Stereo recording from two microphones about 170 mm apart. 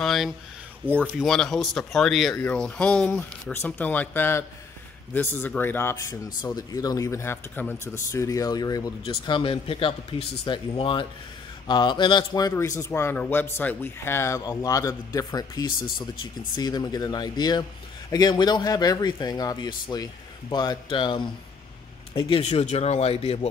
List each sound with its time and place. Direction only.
0.0 s a man's voice: centre (ahead or behind); by 23.5 s 35° left (ahead or behind)